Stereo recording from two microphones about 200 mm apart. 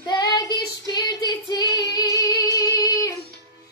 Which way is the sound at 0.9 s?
20° left (ahead or behind).